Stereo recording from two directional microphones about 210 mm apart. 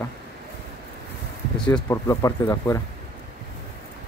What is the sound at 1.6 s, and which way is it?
Speech, 5° left (ahead or behind).